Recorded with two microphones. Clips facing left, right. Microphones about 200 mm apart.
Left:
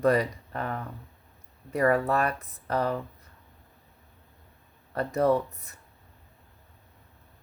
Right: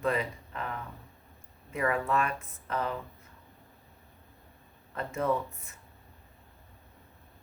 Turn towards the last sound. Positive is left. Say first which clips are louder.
# left 5 dB
turn(degrees=40)  # may be behind; listen again after turning